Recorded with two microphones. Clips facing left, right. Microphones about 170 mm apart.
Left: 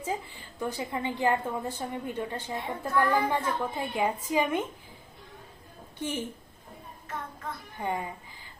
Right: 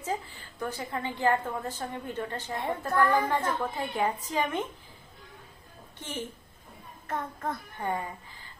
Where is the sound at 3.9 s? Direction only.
10° left (ahead or behind).